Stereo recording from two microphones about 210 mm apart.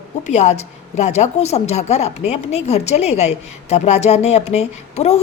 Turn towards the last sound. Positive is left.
turn(degrees=30)  # may be behind; listen again after turning